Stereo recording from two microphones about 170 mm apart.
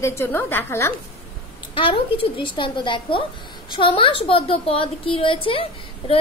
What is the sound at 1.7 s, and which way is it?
A woman's voice, 30° left (ahead or behind).